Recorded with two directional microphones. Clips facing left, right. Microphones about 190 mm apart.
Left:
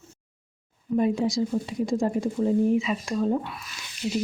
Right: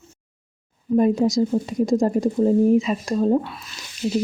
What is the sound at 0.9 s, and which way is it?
Speech, 40° right (ahead or behind).